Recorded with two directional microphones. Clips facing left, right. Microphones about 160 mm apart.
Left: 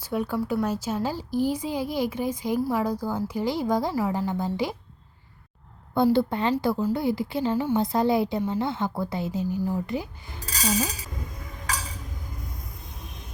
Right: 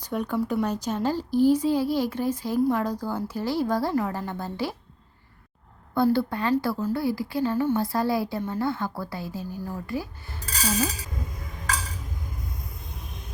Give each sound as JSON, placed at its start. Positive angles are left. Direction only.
{"t": 0.0, "sound": "speech", "side_deg": 5}
{"t": 5.9, "sound": "a woman's voice", "side_deg": 20}